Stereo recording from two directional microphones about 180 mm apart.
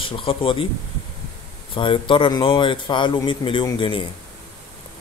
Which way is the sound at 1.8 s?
25° left (ahead or behind).